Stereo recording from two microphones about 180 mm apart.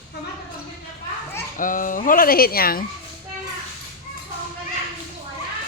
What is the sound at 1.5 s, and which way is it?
Speech, 50° left (ahead or behind).